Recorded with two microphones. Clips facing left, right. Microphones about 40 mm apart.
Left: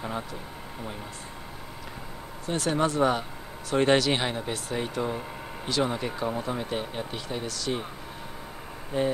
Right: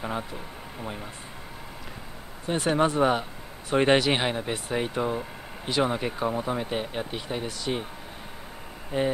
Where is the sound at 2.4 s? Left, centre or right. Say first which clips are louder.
Right 2 dB; centre.